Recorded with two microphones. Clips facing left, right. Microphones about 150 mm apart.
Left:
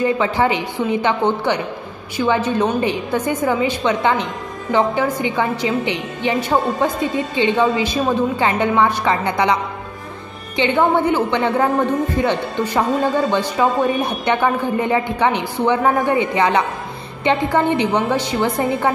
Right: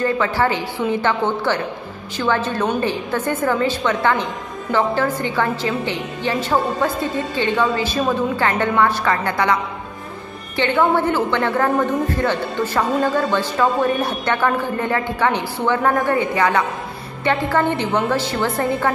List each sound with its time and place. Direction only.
0.0 s a woman's voice: 15° left (ahead or behind)
10.6 s a woman's voice: 15° left (ahead or behind)